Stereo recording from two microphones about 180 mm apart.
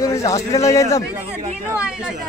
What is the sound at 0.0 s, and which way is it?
A man's voice, 15° left (ahead or behind).